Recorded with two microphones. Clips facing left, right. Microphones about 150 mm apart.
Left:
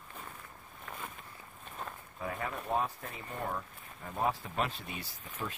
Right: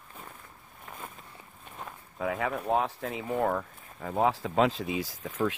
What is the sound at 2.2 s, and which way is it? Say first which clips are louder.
Speech: right 8 dB; 90° right.